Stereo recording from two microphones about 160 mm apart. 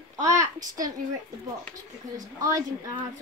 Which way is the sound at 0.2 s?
20° right (ahead or behind).